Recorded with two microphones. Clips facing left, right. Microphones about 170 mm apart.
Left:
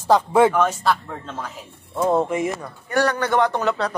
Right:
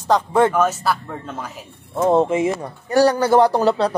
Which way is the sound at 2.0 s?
25° right (ahead or behind).